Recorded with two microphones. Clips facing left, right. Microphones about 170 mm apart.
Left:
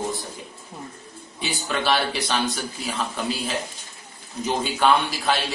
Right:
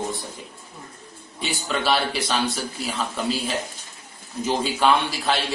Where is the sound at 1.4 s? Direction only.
Centre (ahead or behind).